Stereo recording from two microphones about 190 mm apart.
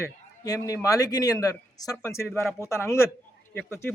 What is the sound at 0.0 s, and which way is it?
A man's voice, 20° left (ahead or behind).